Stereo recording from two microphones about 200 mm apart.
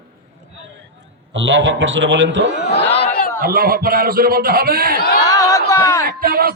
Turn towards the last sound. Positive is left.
turn(degrees=-50)  # may be behind; listen again after turning